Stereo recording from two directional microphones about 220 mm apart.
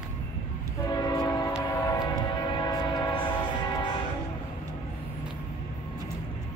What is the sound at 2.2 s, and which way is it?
Music, 20° left (ahead or behind).